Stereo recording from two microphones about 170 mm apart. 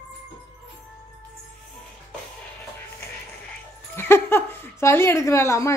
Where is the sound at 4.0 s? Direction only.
15° left (ahead or behind).